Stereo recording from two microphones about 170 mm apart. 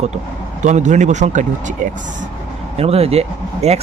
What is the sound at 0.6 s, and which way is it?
Speech, 45° right (ahead or behind).